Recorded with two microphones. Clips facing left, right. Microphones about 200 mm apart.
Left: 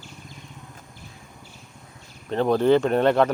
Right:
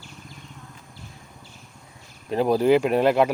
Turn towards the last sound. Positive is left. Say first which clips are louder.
# even
turn(degrees=-5)  # may be behind; listen again after turning